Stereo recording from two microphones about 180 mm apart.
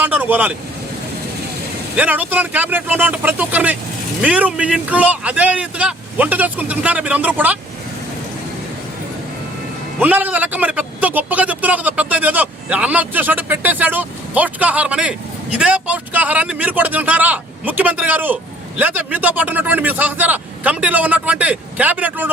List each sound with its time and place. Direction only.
0.0 s speech: 10° right (ahead or behind)
2.0 s a man's voice: 10° right (ahead or behind)
10.0 s a man's voice: 10° right (ahead or behind)